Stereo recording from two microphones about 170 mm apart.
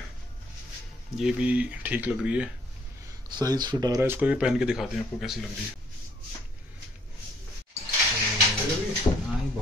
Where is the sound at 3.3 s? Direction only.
25° right (ahead or behind).